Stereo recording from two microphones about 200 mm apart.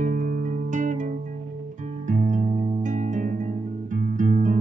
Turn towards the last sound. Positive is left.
turn(degrees=-40)  # may be behind; listen again after turning